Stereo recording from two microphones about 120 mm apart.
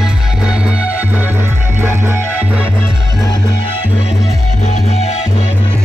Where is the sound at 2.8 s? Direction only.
30° left (ahead or behind).